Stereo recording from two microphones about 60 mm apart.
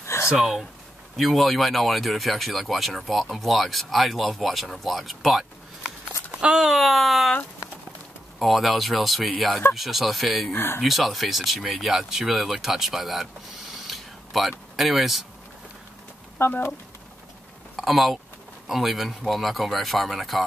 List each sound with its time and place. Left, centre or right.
0.0 s a sound: left
0.3 s speech: centre
8.4 s speech: centre
10.5 s speech: left
10.8 s speech: centre
13.8 s a sound: centre
14.8 s speech: centre
16.3 s speech: left
17.7 s speech: centre